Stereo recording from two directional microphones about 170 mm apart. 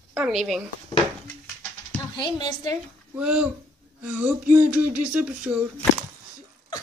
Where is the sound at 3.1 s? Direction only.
5° right (ahead or behind).